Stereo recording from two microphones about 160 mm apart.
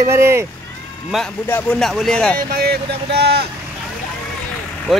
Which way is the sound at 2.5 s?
90° right.